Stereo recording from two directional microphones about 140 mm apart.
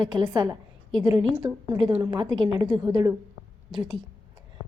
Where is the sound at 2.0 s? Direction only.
30° right (ahead or behind).